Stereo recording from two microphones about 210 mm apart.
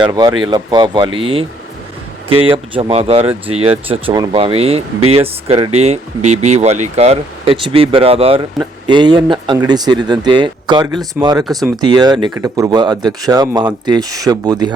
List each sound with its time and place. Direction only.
0.0 s speech: 20° right (ahead or behind)